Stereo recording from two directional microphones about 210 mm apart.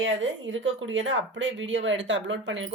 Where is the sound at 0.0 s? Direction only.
60° right (ahead or behind).